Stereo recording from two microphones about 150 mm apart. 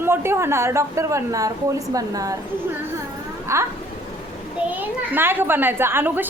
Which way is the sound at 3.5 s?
20° right (ahead or behind).